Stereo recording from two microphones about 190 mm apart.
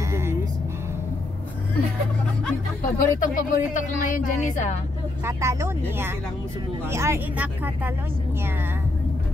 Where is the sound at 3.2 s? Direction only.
45° left (ahead or behind).